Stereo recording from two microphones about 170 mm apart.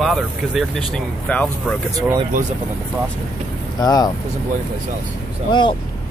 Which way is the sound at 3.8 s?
20° left (ahead or behind).